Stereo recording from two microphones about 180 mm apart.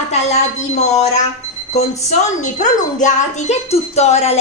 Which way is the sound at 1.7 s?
40° left (ahead or behind).